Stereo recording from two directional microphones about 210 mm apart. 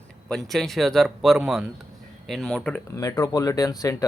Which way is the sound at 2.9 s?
15° left (ahead or behind).